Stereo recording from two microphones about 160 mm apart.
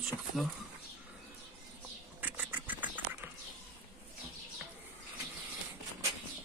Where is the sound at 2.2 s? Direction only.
10° right (ahead or behind).